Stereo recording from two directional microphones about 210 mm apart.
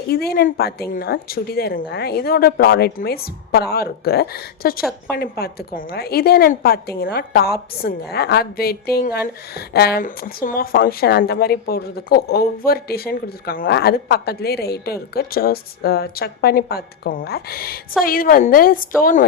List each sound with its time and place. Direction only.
0.1 s a woman's voice: 50° left (ahead or behind)